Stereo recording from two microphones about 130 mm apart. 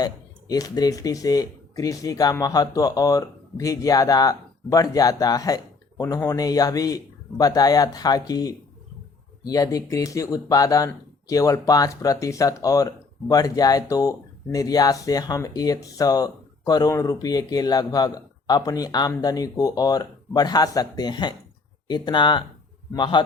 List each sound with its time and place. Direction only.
0.0 s speech: 30° left (ahead or behind)